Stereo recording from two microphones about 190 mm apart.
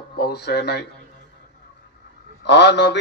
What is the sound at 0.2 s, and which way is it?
Speech, 60° left (ahead or behind).